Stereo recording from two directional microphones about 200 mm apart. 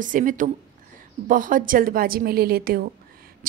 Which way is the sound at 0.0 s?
40° right (ahead or behind).